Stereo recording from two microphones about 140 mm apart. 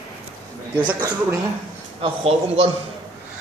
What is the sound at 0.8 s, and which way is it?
Speech, 30° right (ahead or behind).